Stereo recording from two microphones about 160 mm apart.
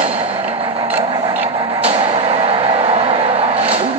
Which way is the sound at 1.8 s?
35° right (ahead or behind).